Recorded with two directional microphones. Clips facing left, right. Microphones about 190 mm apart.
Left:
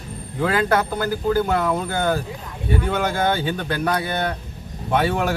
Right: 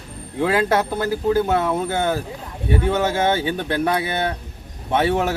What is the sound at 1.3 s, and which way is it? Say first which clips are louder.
Speech: right 1 dB; 25° right (ahead or behind).